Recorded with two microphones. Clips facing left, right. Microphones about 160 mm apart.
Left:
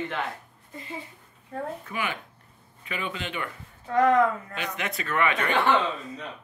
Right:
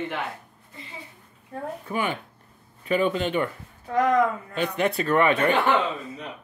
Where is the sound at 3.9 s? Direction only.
15° right (ahead or behind).